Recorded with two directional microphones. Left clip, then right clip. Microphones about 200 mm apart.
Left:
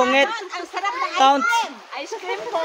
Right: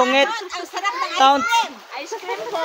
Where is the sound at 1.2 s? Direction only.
20° right (ahead or behind).